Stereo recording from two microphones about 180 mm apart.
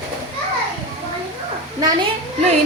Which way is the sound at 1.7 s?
20° right (ahead or behind).